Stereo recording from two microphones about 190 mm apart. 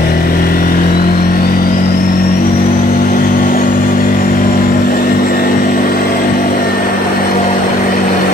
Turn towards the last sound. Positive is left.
turn(degrees=50)  # may be behind; listen again after turning